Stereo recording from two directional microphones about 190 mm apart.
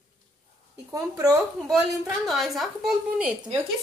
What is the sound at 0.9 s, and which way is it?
Speech, 15° right (ahead or behind).